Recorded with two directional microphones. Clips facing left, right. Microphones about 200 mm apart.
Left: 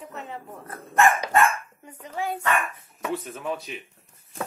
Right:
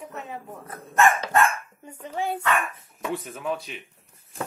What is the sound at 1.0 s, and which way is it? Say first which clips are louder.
Dog: even; 15° left (ahead or behind).